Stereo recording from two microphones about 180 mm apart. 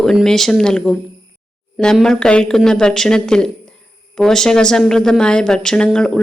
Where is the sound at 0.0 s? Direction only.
Centre (ahead or behind).